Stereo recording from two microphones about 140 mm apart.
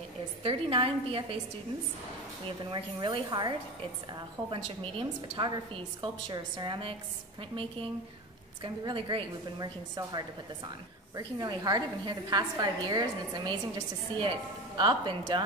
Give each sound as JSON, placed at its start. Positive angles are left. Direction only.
{"t": 0.4, "sound": "a woman's voice", "side_deg": -40}
{"t": 2.7, "sound": "a woman's voice", "side_deg": -35}
{"t": 8.6, "sound": "a woman's voice", "side_deg": -35}
{"t": 11.1, "sound": "a woman's voice", "side_deg": -30}